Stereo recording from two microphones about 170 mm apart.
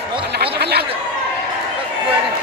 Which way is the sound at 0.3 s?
70° right (ahead or behind).